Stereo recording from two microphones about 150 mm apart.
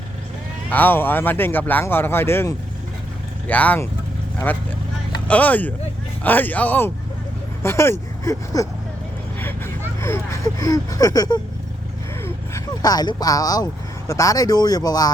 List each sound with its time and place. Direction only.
0.7 s speech: 10° left (ahead or behind)
5.3 s speech: 10° left (ahead or behind); by 11.3 s 25° left (ahead or behind)
12.2 s a sound: 20° left (ahead or behind)
14.1 s speech: 20° left (ahead or behind)